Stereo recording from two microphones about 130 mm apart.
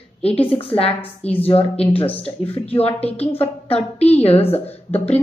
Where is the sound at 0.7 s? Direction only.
50° left (ahead or behind).